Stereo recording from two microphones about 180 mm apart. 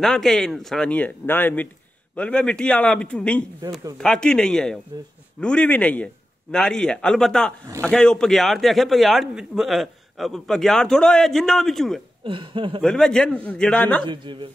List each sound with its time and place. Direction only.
0.0 s a man's voice: centre (ahead or behind)
12.3 s speech: 30° right (ahead or behind)
12.8 s a man's voice: 5° left (ahead or behind)
14.0 s speech: 25° right (ahead or behind)